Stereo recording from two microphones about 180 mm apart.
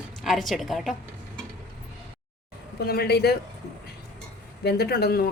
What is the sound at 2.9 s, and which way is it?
Speech, 60° left (ahead or behind).